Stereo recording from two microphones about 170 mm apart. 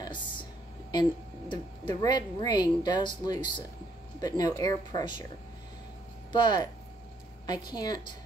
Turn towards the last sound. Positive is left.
turn(degrees=25)  # may be behind; listen again after turning